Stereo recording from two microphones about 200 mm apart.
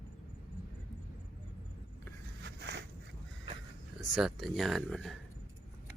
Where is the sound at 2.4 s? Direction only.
60° right (ahead or behind).